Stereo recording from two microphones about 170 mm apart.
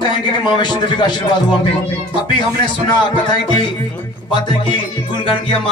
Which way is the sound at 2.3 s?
30° left (ahead or behind).